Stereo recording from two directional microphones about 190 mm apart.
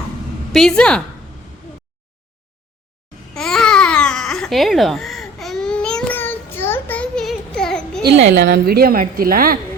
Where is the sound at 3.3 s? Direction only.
5° left (ahead or behind).